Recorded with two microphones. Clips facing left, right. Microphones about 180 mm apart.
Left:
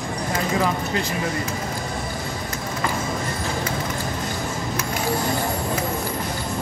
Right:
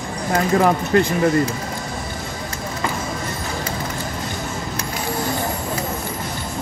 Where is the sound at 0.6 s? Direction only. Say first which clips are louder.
Right 9 dB; 55° right (ahead or behind).